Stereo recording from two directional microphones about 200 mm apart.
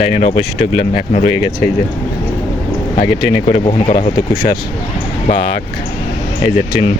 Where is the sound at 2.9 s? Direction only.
45° left (ahead or behind).